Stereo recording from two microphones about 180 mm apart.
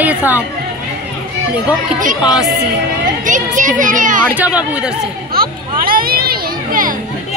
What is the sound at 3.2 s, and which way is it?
A child's voice, 45° right (ahead or behind).